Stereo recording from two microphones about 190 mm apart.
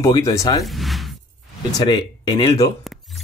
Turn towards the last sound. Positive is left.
turn(degrees=0)  # may be behind; listen again after turning